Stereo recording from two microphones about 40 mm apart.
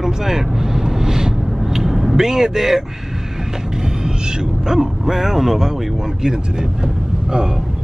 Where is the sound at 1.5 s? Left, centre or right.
Centre.